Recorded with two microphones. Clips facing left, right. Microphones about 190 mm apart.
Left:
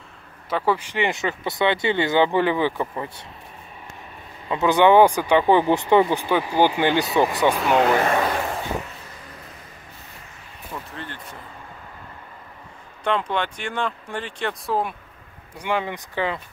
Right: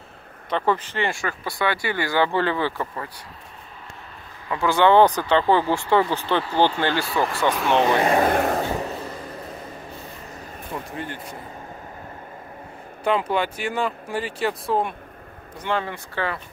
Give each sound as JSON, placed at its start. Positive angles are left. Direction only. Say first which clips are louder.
{"t": 0.5, "sound": "speech", "louder": "even", "side_deg": 10}
{"t": 4.5, "sound": "speech", "louder": "left 2 dB", "side_deg": 20}
{"t": 7.5, "sound": "speech", "louder": "left 1 dB", "side_deg": 0}
{"t": 8.2, "sound": "vehicle", "louder": "right 4 dB", "side_deg": -45}
{"t": 13.0, "sound": "speech", "louder": "right 2 dB", "side_deg": -5}
{"t": 15.6, "sound": "speech", "louder": "left 1 dB", "side_deg": 15}